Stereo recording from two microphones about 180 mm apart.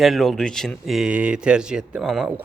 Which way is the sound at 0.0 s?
Centre (ahead or behind).